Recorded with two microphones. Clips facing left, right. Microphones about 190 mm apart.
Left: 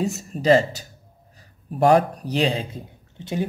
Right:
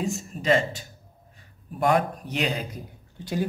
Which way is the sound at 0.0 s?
35° left (ahead or behind).